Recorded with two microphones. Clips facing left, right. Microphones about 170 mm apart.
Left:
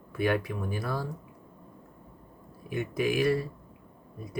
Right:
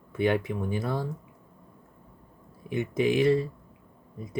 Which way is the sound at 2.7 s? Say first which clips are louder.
Right 3 dB; 25° right (ahead or behind).